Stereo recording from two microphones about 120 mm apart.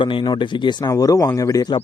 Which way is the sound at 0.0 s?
45° left (ahead or behind).